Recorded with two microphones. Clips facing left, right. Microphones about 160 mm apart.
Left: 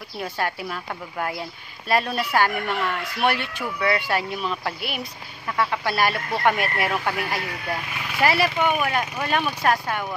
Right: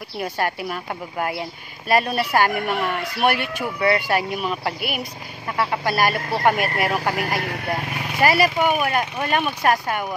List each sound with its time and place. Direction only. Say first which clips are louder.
0.2 s speech: right 3 dB; 5° right (ahead or behind)
7.2 s speech: right 3 dB; 50° right (ahead or behind)
8.2 s speech: right 3 dB; 5° right (ahead or behind)